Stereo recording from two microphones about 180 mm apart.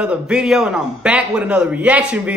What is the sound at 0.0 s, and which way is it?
Speech, 5° right (ahead or behind).